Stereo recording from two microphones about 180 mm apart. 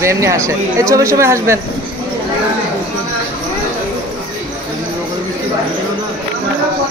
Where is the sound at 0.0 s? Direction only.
15° right (ahead or behind).